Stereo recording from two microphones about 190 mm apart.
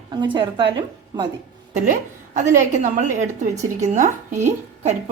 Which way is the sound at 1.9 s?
40° right (ahead or behind).